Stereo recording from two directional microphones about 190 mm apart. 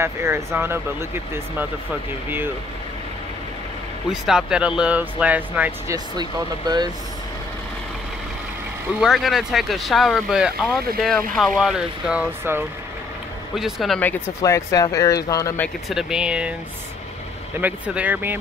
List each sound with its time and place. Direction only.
0.0 s speech: 15° right (ahead or behind)
4.1 s speech: 5° right (ahead or behind)
9.0 s speech: centre (ahead or behind)
14.4 s speech: 15° left (ahead or behind)
15.9 s speech: 5° right (ahead or behind)
17.6 s speech: 10° right (ahead or behind)